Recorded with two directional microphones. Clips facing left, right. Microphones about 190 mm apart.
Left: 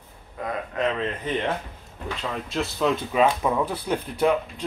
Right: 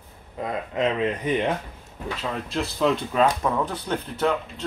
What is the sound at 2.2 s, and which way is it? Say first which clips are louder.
Speech: even; centre (ahead or behind).